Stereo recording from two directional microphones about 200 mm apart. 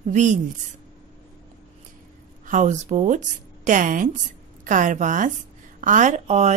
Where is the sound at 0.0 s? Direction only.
40° right (ahead or behind).